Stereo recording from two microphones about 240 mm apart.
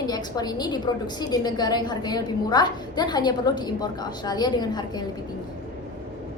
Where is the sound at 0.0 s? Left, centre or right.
Centre.